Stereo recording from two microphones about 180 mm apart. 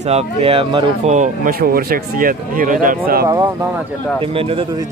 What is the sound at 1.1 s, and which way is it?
Speech, 45° right (ahead or behind).